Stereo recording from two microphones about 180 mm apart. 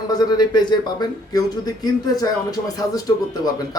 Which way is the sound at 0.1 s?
20° left (ahead or behind).